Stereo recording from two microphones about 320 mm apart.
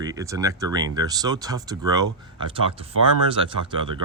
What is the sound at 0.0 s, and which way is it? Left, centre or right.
Speech, centre.